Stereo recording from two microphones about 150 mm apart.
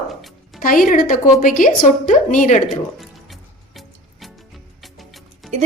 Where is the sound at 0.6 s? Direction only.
65° left (ahead or behind).